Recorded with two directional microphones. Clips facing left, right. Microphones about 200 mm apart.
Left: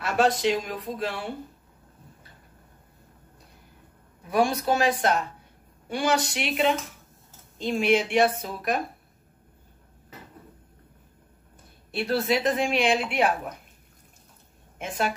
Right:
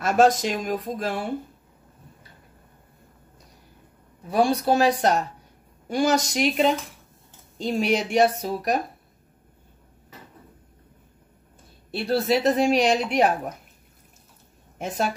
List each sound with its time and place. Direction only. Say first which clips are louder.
0.0 s speech: right 4 dB; 45° right (ahead or behind)
4.3 s a woman's voice: right 3 dB; 35° right (ahead or behind)
11.9 s a woman's voice: right 3 dB; 35° right (ahead or behind)
14.8 s a woman's voice: right 2 dB; 40° right (ahead or behind)